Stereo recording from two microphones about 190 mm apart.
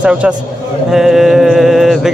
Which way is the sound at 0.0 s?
5° right (ahead or behind).